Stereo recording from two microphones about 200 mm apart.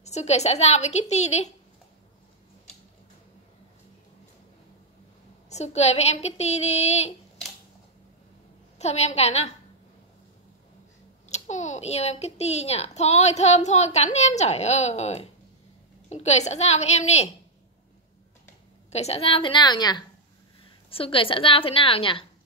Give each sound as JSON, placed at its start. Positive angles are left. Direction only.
{"t": 0.0, "sound": "a child's voice", "side_deg": 35}
{"t": 5.5, "sound": "a child's voice", "side_deg": 35}
{"t": 8.7, "sound": "a child's voice", "side_deg": 35}
{"t": 11.2, "sound": "a child's voice", "side_deg": 35}
{"t": 18.9, "sound": "a woman's voice", "side_deg": 30}